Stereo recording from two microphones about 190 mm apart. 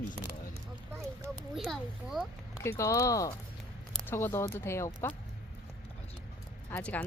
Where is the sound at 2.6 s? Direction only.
15° left (ahead or behind).